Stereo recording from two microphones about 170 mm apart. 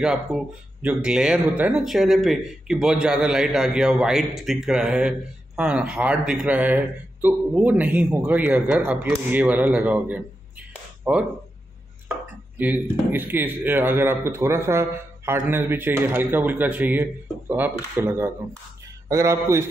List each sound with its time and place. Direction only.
0.0 s speech: 5° right (ahead or behind)
12.5 s speech: 10° right (ahead or behind)